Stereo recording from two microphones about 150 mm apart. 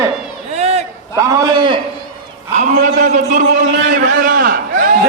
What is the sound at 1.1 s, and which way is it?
Speech, 20° right (ahead or behind).